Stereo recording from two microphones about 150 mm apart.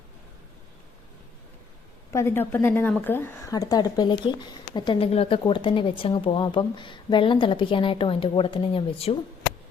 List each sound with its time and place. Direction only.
2.1 s a woman's voice: 15° left (ahead or behind); by 9.1 s 40° left (ahead or behind)